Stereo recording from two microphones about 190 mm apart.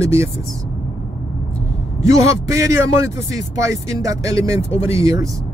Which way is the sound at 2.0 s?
15° right (ahead or behind).